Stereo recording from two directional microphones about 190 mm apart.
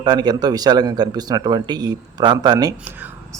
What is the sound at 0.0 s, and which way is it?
A man's voice, 20° right (ahead or behind).